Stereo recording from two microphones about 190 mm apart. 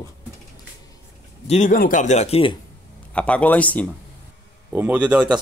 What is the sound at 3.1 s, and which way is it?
Speech, 5° left (ahead or behind).